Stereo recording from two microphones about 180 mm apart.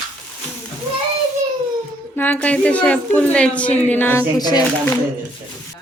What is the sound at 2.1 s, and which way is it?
A woman's voice, 10° left (ahead or behind).